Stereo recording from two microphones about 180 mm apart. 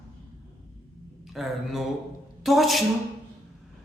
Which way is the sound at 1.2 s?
Centre (ahead or behind).